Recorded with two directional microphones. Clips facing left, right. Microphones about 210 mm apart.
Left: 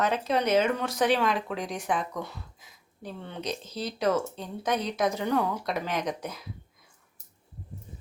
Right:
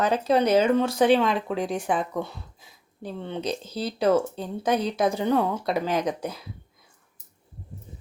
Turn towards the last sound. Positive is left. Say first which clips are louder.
# right 5 dB
turn(degrees=-30)  # may be behind; listen again after turning